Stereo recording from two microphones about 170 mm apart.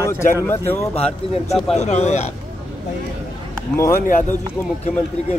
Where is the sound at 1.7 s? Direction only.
40° left (ahead or behind).